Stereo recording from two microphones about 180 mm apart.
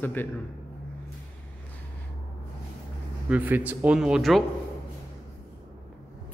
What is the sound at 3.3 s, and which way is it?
A man's voice, 10° right (ahead or behind).